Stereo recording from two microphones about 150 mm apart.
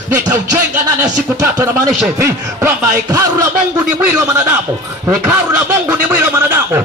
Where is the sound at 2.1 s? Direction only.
15° right (ahead or behind).